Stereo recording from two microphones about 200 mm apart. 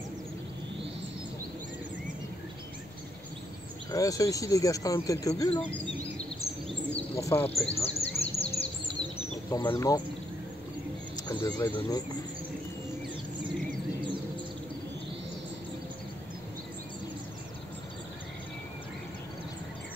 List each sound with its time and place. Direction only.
3.9 s speech: 15° left (ahead or behind)
6.9 s bird: 10° left (ahead or behind)
7.7 s bird: 30° left (ahead or behind)
9.5 s speech: 15° left (ahead or behind)
11.2 s speech: 20° left (ahead or behind)